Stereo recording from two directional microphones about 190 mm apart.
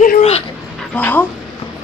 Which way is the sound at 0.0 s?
40° left (ahead or behind).